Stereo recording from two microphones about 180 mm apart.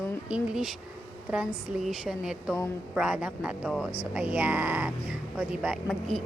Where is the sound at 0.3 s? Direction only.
5° right (ahead or behind).